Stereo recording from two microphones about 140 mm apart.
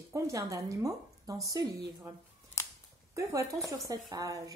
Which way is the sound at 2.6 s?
20° left (ahead or behind).